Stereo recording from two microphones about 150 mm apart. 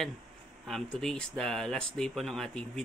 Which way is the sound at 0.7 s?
Centre (ahead or behind).